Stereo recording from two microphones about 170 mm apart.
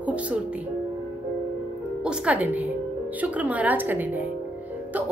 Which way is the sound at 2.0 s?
5° right (ahead or behind).